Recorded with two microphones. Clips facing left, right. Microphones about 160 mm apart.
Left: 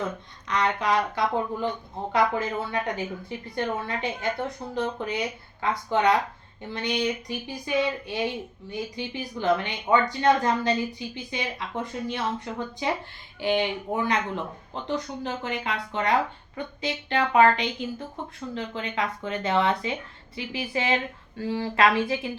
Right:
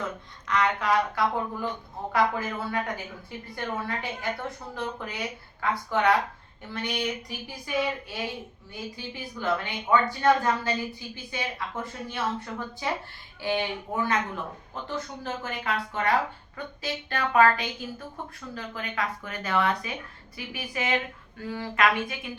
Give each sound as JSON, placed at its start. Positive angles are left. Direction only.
{"t": 0.4, "sound": "a woman's voice", "side_deg": 20}